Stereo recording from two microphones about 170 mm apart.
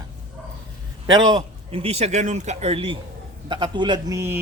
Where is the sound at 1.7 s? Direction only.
35° right (ahead or behind).